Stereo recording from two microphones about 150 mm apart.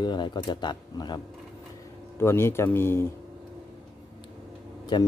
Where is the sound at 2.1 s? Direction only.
15° left (ahead or behind).